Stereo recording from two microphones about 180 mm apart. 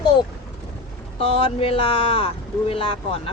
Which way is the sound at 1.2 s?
35° left (ahead or behind).